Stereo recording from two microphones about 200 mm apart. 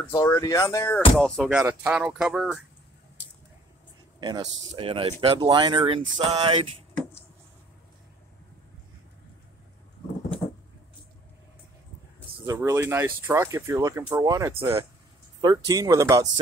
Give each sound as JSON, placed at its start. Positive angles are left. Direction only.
{"t": 0.1, "sound": "speech", "side_deg": 15}
{"t": 1.6, "sound": "speech", "side_deg": -10}
{"t": 4.2, "sound": "speech", "side_deg": -20}
{"t": 12.4, "sound": "speech", "side_deg": -15}